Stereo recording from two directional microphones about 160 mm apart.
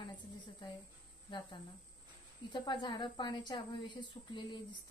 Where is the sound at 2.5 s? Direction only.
30° left (ahead or behind).